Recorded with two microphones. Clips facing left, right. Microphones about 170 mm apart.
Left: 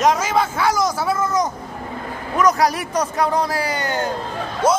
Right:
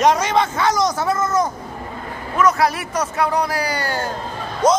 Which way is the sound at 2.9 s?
30° left (ahead or behind).